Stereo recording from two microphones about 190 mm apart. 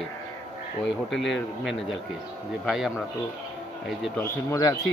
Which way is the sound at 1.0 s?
Centre (ahead or behind).